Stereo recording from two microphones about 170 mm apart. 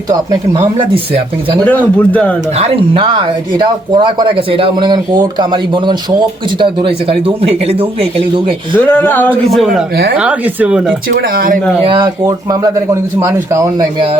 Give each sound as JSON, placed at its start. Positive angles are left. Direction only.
{"t": 0.1, "sound": "speech", "side_deg": -30}
{"t": 1.6, "sound": "speech", "side_deg": 10}
{"t": 2.6, "sound": "speech", "side_deg": -35}
{"t": 8.8, "sound": "speech", "side_deg": 10}
{"t": 9.6, "sound": "speech", "side_deg": 0}
{"t": 11.3, "sound": "speech", "side_deg": -55}
{"t": 11.8, "sound": "speech", "side_deg": -30}